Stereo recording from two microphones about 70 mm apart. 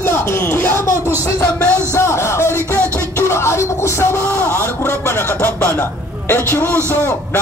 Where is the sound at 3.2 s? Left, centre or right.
Left.